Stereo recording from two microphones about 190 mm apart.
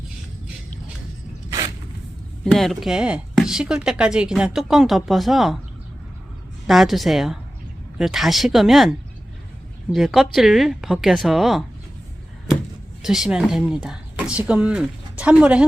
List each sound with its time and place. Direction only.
1.5 s a sound: 20° right (ahead or behind)
2.4 s speech: centre (ahead or behind)
6.7 s speech: centre (ahead or behind)
13.0 s speech: 5° right (ahead or behind)